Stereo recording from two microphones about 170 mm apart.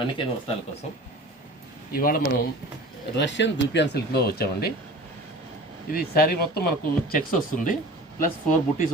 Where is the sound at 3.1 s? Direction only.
90° left; by 4.7 s 65° left (ahead or behind).